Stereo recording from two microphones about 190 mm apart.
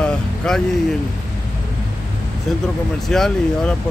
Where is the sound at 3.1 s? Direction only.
5° left (ahead or behind).